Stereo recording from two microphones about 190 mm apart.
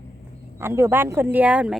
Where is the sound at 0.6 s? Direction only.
10° right (ahead or behind).